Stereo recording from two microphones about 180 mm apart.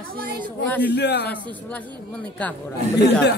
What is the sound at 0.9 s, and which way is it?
Speech, 70° left (ahead or behind).